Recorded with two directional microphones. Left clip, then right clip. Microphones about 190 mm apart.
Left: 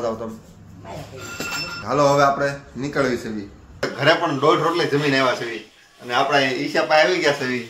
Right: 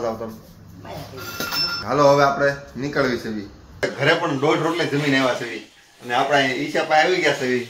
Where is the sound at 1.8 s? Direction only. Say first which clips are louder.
Even; centre (ahead or behind).